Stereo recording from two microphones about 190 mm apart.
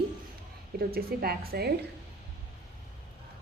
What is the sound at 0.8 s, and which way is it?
Speech, 55° right (ahead or behind).